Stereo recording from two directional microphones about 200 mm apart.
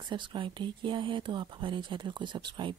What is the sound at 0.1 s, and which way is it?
A woman's voice, 25° right (ahead or behind).